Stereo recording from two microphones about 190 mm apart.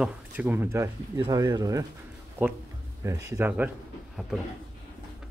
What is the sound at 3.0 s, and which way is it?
Speech, 15° right (ahead or behind).